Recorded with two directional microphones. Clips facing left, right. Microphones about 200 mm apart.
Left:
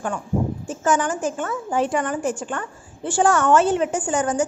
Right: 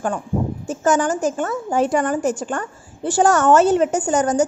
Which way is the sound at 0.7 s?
40° right (ahead or behind).